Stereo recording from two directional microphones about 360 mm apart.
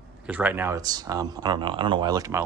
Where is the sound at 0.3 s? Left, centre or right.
Centre.